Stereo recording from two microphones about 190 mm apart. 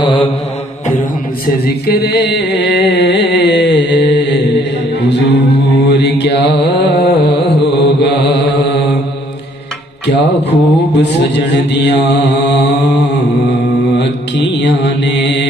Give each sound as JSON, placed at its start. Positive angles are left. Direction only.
{"t": 0.0, "sound": "mantra", "side_deg": 25}
{"t": 1.9, "sound": "music", "side_deg": 60}
{"t": 5.9, "sound": "mantra", "side_deg": 65}
{"t": 7.2, "sound": "music", "side_deg": 65}
{"t": 10.0, "sound": "mantra", "side_deg": 65}